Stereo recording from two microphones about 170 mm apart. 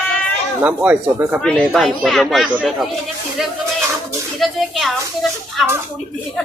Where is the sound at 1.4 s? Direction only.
5° left (ahead or behind).